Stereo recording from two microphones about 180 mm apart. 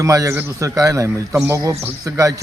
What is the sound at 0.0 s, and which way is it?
A man's voice, 20° right (ahead or behind).